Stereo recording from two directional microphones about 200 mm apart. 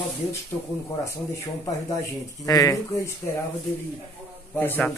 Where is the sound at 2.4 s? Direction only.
15° left (ahead or behind).